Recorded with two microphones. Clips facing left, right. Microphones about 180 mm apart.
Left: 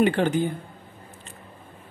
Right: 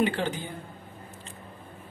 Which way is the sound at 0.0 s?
55° left (ahead or behind).